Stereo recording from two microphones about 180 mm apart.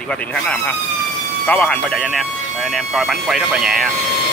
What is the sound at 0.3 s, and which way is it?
Speech, 5° left (ahead or behind).